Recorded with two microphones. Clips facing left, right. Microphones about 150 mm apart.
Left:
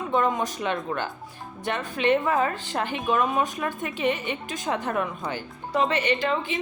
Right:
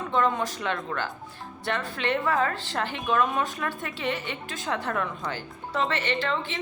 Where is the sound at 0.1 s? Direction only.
15° left (ahead or behind).